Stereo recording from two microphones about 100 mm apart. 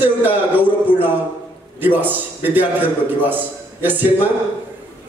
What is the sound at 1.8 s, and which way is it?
A man's voice, 20° right (ahead or behind).